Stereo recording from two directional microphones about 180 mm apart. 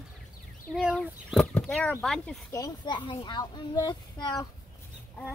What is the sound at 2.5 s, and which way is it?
Speech, 20° left (ahead or behind).